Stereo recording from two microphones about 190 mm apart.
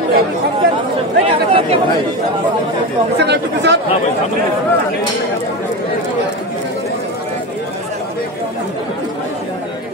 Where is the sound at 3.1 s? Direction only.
65° right (ahead or behind).